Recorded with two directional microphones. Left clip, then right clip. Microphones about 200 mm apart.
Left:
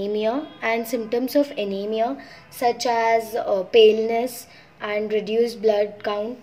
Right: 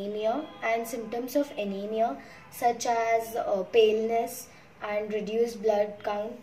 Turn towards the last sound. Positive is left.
turn(degrees=50)  # may be behind; listen again after turning